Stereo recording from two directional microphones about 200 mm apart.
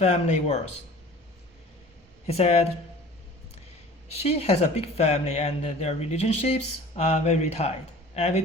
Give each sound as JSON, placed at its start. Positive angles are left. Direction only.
{"t": 0.0, "sound": "speech", "side_deg": 35}
{"t": 2.2, "sound": "speech", "side_deg": 30}
{"t": 4.2, "sound": "speech", "side_deg": 30}